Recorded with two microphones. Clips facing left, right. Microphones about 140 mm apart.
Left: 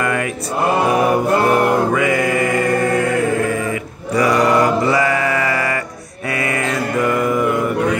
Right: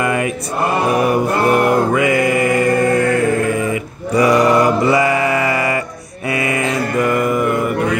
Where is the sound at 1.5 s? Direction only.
10° right (ahead or behind).